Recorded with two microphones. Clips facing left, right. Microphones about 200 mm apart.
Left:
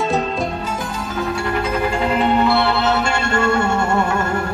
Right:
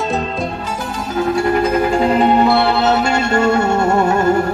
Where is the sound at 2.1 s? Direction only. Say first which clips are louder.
Right 2 dB; 40° right (ahead or behind).